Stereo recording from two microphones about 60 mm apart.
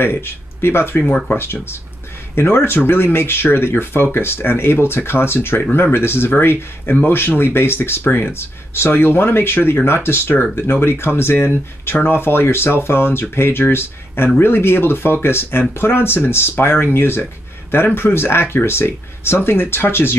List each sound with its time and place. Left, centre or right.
0.0 s speech: left
1.0 s speech: centre
1.3 s speech: left